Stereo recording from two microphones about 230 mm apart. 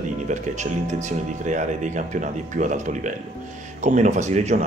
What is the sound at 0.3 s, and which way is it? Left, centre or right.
Speech, right.